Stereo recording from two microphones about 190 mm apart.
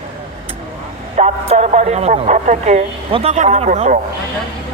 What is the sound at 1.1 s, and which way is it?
Speech, 35° right (ahead or behind).